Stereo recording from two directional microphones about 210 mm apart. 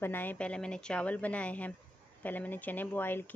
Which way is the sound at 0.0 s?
10° left (ahead or behind).